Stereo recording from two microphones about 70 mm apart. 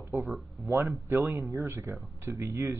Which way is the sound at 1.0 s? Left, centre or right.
Right.